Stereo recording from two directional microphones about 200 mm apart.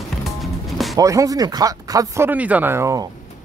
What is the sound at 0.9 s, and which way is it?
Speech, 15° right (ahead or behind).